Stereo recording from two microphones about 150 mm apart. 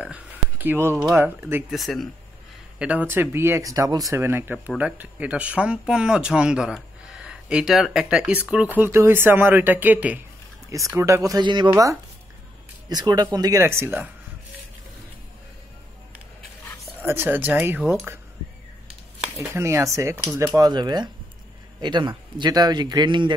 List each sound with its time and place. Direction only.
0.0 s a sound: 10° right (ahead or behind)
0.9 s speech: 25° right (ahead or behind)
1.7 s speech: centre (ahead or behind)
10.7 s speech: 20° right (ahead or behind)
17.0 s speech: 15° right (ahead or behind)
19.3 s speech: 20° right (ahead or behind)